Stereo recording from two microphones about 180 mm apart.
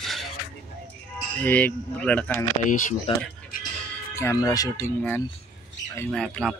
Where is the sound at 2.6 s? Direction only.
45° left (ahead or behind).